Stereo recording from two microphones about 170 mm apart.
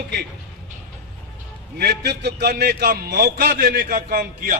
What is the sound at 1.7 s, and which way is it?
A man's voice, 75° right (ahead or behind).